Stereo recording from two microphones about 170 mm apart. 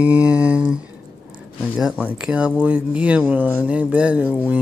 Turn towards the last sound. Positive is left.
turn(degrees=-5)  # may be behind; listen again after turning